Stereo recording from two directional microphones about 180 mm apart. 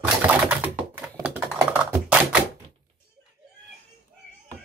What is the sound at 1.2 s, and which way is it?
Typing, 10° right (ahead or behind).